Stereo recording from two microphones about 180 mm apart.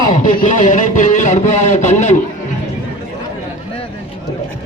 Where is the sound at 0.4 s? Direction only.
45° left (ahead or behind).